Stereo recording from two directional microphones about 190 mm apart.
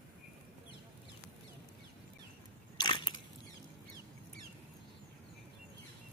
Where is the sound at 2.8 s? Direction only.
25° left (ahead or behind).